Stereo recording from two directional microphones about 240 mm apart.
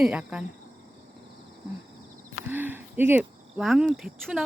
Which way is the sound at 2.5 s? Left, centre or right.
Centre.